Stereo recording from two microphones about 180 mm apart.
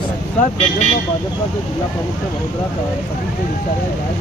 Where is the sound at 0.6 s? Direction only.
40° left (ahead or behind).